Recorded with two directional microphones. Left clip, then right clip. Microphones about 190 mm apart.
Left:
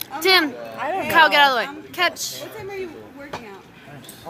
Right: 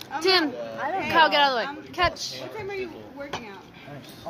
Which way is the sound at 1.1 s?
5° left (ahead or behind).